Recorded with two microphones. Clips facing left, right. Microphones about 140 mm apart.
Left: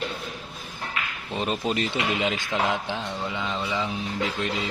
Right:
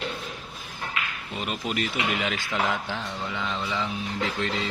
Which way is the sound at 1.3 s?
30° left (ahead or behind).